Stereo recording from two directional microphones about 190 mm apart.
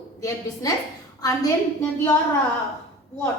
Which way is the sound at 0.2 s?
15° left (ahead or behind).